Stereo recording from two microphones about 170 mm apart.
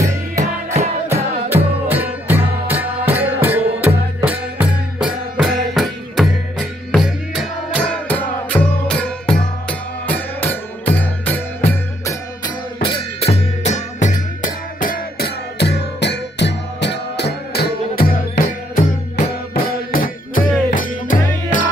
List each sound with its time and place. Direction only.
0.0 s music: 20° right (ahead or behind); by 11.4 s 10° left (ahead or behind)
12.8 s music: 35° left (ahead or behind); by 18.0 s 70° left (ahead or behind)
18.3 s music: 60° left (ahead or behind)